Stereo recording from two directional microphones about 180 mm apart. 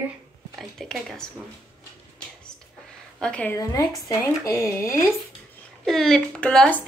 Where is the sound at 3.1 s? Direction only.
5° left (ahead or behind).